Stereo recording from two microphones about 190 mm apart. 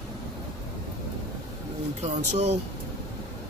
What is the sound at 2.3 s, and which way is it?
Speech, 35° right (ahead or behind).